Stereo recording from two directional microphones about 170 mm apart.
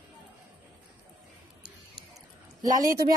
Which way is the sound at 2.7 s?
20° right (ahead or behind).